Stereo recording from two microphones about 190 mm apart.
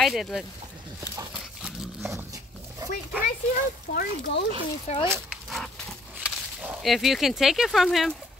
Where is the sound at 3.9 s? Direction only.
55° left (ahead or behind).